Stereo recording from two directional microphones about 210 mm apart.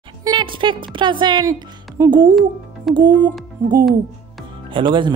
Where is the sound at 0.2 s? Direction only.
20° right (ahead or behind).